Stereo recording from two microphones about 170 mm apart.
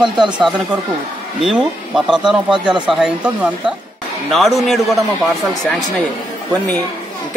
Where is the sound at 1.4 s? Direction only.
5° right (ahead or behind).